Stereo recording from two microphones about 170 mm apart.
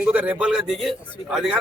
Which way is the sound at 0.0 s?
10° right (ahead or behind).